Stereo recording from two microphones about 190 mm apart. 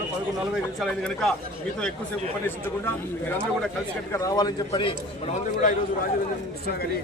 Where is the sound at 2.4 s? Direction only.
10° left (ahead or behind).